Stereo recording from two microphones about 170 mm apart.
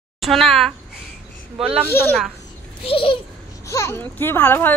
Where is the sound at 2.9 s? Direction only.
30° left (ahead or behind).